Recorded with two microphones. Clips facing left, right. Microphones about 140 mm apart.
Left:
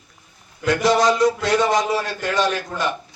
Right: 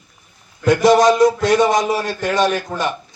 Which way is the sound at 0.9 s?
20° right (ahead or behind).